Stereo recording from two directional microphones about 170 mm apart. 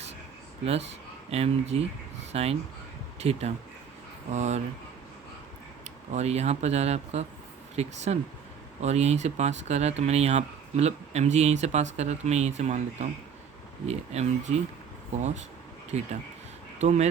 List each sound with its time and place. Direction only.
0.6 s speech: 35° right (ahead or behind)
6.1 s speech: 40° right (ahead or behind)
15.9 s speech: 40° right (ahead or behind)